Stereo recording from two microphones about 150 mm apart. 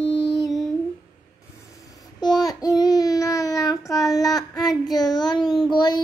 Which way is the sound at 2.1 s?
25° left (ahead or behind).